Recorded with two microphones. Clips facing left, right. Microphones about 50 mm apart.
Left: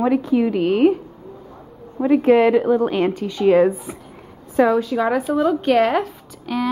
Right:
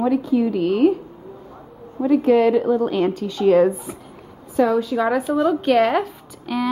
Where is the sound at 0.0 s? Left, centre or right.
Left.